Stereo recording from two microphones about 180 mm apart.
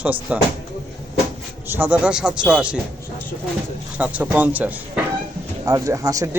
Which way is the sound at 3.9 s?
10° right (ahead or behind).